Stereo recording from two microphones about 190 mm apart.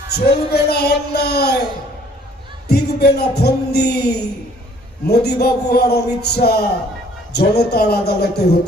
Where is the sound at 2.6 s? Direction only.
60° left (ahead or behind).